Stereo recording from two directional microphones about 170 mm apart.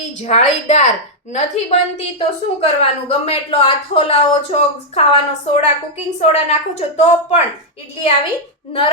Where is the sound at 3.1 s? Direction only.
35° left (ahead or behind).